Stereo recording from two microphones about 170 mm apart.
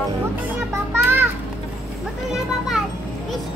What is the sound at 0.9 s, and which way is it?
Music, 15° right (ahead or behind).